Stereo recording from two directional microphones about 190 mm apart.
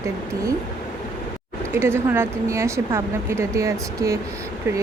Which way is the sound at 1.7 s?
15° right (ahead or behind).